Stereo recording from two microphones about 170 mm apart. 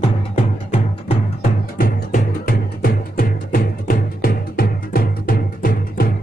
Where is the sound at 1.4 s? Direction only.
55° left (ahead or behind).